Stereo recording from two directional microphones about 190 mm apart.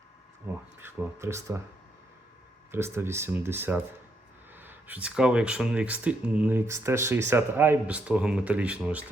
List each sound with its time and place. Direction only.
0.5 s speech: 10° right (ahead or behind)
2.7 s speech: 15° right (ahead or behind)